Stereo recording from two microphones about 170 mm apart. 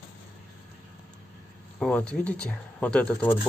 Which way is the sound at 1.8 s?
5° left (ahead or behind).